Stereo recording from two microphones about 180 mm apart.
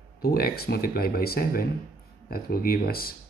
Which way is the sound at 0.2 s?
55° left (ahead or behind).